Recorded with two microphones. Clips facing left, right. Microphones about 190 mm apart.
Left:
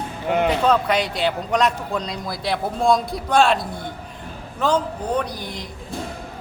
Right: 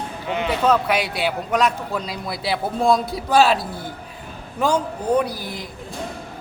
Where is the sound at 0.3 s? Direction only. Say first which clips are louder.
Left 5 dB; 55° left (ahead or behind).